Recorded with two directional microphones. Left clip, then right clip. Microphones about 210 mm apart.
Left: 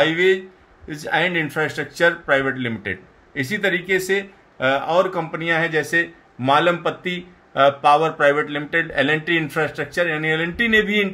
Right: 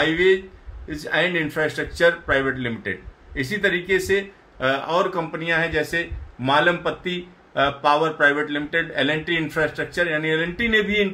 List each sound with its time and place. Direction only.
0.0 s speech: 50° left (ahead or behind)